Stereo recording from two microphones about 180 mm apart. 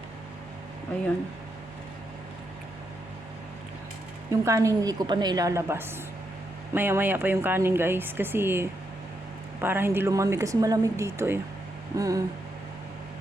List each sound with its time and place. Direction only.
4.3 s a woman's voice: 15° right (ahead or behind)